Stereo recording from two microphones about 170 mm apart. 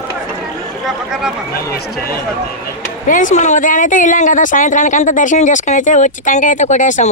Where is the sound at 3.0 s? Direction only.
50° left (ahead or behind).